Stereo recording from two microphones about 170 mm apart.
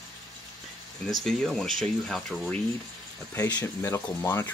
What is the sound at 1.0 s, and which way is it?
Speech, 5° left (ahead or behind).